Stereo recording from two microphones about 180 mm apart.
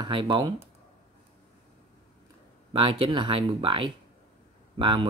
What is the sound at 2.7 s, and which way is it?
Speech, 30° right (ahead or behind).